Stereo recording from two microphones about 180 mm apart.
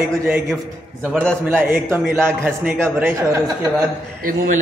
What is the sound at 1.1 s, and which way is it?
Speech, 5° left (ahead or behind).